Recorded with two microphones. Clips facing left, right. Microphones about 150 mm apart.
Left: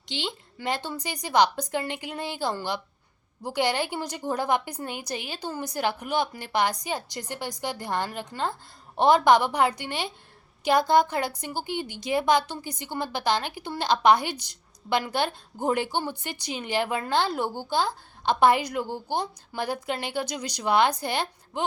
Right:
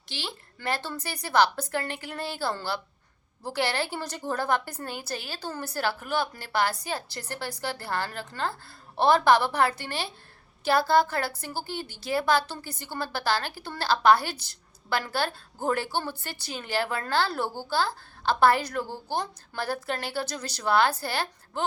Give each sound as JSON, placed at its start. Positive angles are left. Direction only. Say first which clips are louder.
{"t": 0.1, "sound": "a woman's voice", "louder": "left 5 dB", "side_deg": 20}